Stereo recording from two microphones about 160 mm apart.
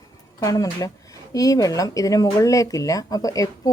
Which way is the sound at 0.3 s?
20° left (ahead or behind).